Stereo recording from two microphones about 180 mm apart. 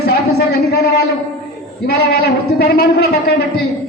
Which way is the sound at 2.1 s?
60° left (ahead or behind).